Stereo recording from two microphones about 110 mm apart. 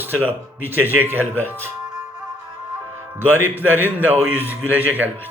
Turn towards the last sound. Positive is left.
turn(degrees=-15)  # may be behind; listen again after turning